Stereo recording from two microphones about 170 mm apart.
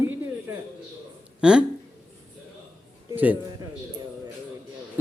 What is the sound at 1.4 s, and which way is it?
Speech, 5° right (ahead or behind).